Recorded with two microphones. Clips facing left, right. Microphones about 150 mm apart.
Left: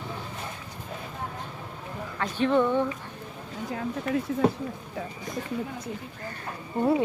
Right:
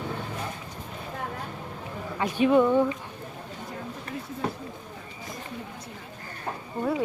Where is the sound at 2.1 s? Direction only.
10° right (ahead or behind).